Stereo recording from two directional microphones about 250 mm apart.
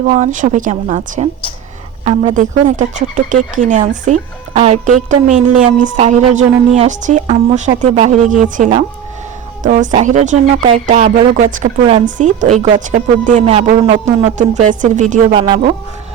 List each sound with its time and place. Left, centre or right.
0.0 s a woman's voice: right